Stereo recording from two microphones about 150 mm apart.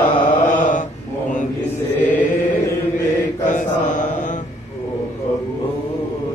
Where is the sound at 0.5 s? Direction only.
55° left (ahead or behind).